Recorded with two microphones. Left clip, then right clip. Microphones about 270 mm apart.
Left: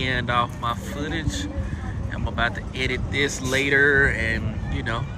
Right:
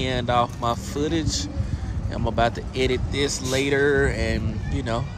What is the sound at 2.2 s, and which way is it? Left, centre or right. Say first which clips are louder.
Speech: right 3 dB; right.